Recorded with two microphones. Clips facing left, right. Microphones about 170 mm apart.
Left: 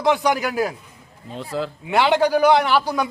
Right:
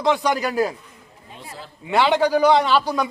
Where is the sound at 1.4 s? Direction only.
90° left.